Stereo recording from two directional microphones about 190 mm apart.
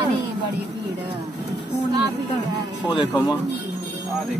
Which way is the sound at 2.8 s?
25° left (ahead or behind).